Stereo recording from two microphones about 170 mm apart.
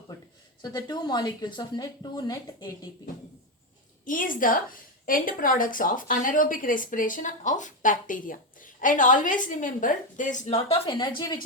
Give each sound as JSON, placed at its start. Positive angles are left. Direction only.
{"t": 0.6, "sound": "speech", "side_deg": 25}
{"t": 4.0, "sound": "a woman's voice", "side_deg": 50}